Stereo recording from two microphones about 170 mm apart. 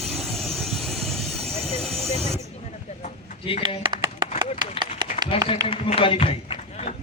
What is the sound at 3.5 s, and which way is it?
Speech, 30° left (ahead or behind).